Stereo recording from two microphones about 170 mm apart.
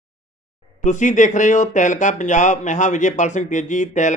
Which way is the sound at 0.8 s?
45° left (ahead or behind).